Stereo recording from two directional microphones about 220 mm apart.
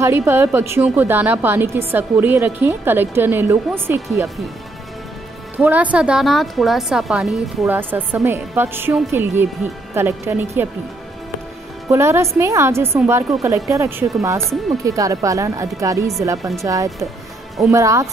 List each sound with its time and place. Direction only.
0.0 s a woman's voice: 10° right (ahead or behind)
5.6 s a woman's voice: 5° right (ahead or behind)
11.9 s a woman's voice: 10° right (ahead or behind)